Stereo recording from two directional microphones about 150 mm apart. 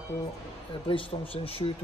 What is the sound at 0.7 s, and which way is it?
Speech, 35° left (ahead or behind).